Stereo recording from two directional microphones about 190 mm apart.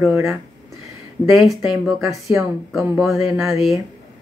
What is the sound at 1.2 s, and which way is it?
Speech, centre (ahead or behind).